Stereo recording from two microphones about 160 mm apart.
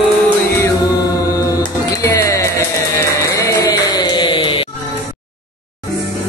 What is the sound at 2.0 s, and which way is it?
Music, 20° left (ahead or behind).